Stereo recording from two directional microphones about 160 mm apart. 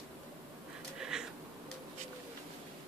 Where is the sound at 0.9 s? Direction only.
5° right (ahead or behind).